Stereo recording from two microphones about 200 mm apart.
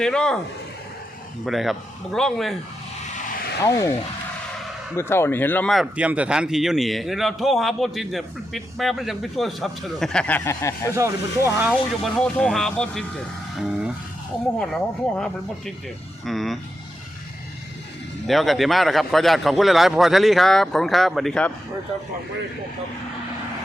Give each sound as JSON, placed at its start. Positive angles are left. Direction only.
{"t": 0.0, "sound": "speech", "side_deg": 5}
{"t": 1.5, "sound": "speech", "side_deg": 0}
{"t": 3.6, "sound": "speech", "side_deg": 15}
{"t": 4.9, "sound": "speech", "side_deg": 10}
{"t": 10.9, "sound": "speech", "side_deg": -15}
{"t": 11.7, "sound": "speech", "side_deg": 5}
{"t": 14.6, "sound": "speech", "side_deg": 5}
{"t": 18.3, "sound": "speech", "side_deg": 0}